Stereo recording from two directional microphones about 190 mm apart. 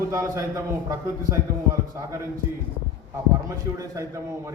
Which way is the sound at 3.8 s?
15° right (ahead or behind).